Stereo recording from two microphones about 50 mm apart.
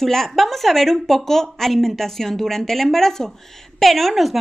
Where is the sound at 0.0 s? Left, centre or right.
Centre.